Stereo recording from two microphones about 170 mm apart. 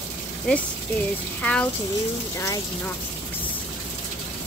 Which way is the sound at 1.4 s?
5° left (ahead or behind).